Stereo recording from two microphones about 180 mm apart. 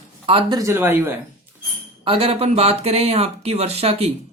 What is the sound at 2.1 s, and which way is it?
Speech, 30° right (ahead or behind).